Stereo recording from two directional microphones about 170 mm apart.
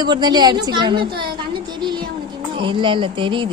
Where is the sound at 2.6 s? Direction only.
30° right (ahead or behind).